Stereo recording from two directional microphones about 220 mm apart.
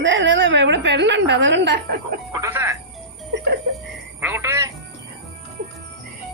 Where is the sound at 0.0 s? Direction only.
55° right (ahead or behind).